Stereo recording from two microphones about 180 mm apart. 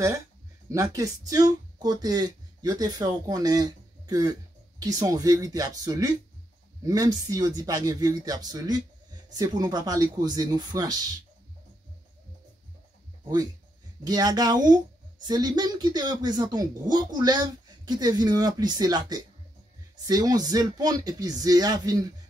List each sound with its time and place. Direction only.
0.7 s speech: 20° right (ahead or behind)
14.0 s speech: 20° right (ahead or behind)